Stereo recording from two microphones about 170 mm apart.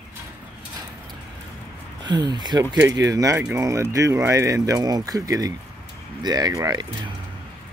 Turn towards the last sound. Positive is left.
turn(degrees=-20)  # may be behind; listen again after turning